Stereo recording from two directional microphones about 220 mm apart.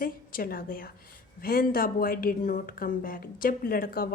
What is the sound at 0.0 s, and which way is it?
A woman's voice, 40° left (ahead or behind).